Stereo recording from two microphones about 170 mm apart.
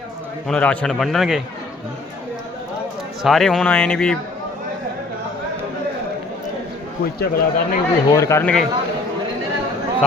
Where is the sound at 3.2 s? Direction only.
Centre (ahead or behind).